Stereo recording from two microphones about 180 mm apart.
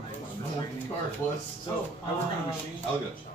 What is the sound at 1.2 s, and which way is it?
Speech, 15° left (ahead or behind).